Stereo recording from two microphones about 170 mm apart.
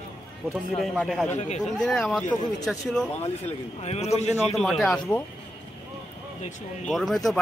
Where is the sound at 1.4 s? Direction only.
45° left (ahead or behind).